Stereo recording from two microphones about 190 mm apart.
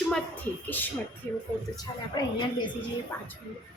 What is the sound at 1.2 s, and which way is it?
A woman's voice, 10° left (ahead or behind).